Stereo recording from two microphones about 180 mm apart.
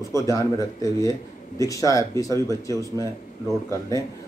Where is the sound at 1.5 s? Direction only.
20° left (ahead or behind).